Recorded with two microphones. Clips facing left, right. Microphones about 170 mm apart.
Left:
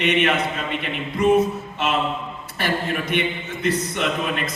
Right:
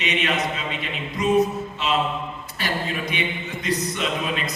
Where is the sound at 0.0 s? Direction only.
55° left (ahead or behind).